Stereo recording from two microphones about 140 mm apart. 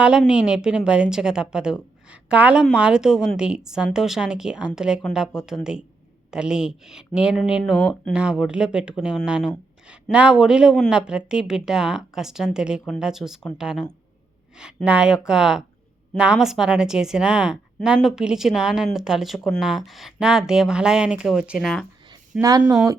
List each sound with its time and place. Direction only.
0.0 s a woman's voice: 5° right (ahead or behind)
22.1 s speech: 25° right (ahead or behind)